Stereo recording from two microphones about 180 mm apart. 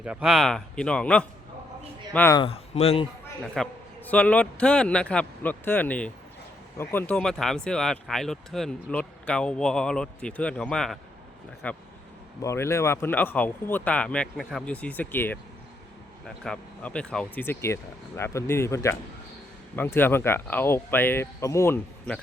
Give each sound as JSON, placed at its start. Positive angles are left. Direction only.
{"t": 0.0, "sound": "speech", "side_deg": -5}
{"t": 2.4, "sound": "speech", "side_deg": 35}
{"t": 3.4, "sound": "speech", "side_deg": 0}